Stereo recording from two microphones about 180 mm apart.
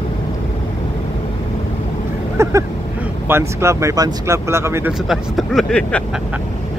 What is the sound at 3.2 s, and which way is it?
Speech, 15° right (ahead or behind).